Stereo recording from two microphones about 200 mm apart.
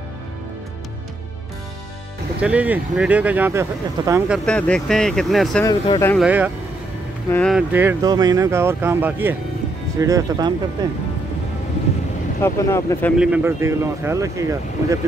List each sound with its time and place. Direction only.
2.4 s speech: 5° right (ahead or behind)
4.5 s speech: 5° left (ahead or behind)
5.6 s speech: 15° left (ahead or behind)
6.1 s speech: 5° right (ahead or behind)
7.2 s speech: 10° left (ahead or behind)
7.5 s speech: 10° right (ahead or behind)
12.4 s speech: 15° left (ahead or behind)
13.2 s speech: 10° right (ahead or behind)